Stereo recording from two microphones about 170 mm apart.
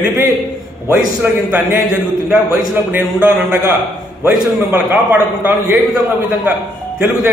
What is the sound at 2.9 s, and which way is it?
A man's voice, 10° right (ahead or behind).